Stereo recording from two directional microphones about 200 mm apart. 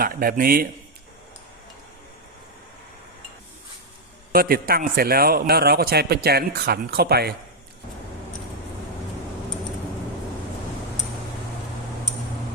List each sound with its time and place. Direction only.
0.0 s a man's voice: 45° right (ahead or behind)
4.3 s a man's voice: 45° right (ahead or behind)